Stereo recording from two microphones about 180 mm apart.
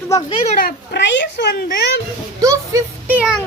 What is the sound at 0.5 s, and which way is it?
A child's voice, 60° left (ahead or behind).